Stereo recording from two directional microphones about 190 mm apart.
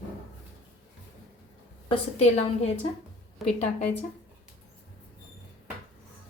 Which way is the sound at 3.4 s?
Centre (ahead or behind).